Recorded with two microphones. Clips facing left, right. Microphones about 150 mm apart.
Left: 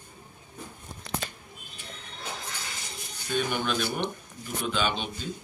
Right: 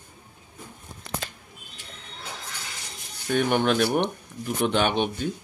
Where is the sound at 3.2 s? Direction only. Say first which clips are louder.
Right 7 dB; 70° right (ahead or behind).